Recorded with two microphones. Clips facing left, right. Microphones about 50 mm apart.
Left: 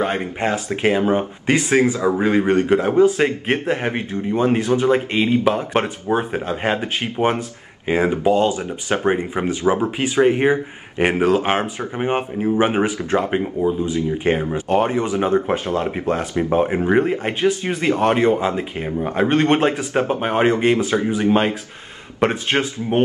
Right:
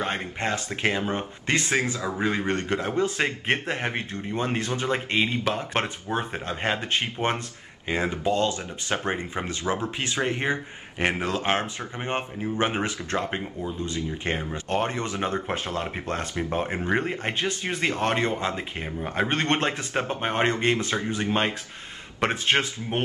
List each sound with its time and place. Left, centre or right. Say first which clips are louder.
0.2 s speech: left 6 dB; centre
1.7 s speech: left 9 dB; left
2.2 s speech: left 8 dB; centre
7.8 s speech: left 8 dB; centre